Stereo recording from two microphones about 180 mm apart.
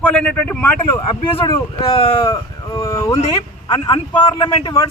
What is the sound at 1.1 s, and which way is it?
A man's voice, 25° left (ahead or behind).